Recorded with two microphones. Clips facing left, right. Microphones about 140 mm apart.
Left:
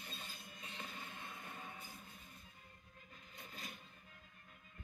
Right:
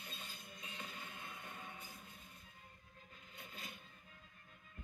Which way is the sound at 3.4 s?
40° left (ahead or behind).